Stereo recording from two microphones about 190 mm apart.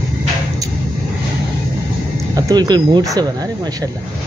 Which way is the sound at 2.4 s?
20° right (ahead or behind).